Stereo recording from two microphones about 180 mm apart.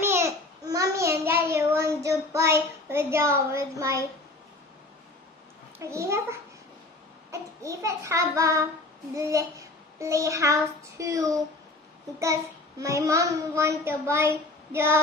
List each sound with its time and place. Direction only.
0.0 s a child's voice: 15° right (ahead or behind)
5.8 s a child's voice: 15° right (ahead or behind)